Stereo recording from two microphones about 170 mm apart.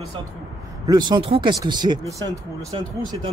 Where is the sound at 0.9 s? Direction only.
25° right (ahead or behind).